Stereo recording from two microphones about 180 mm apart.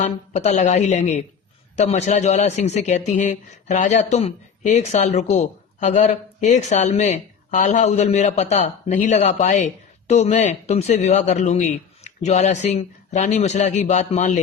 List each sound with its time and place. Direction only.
0.0 s a man's voice: 40° left (ahead or behind)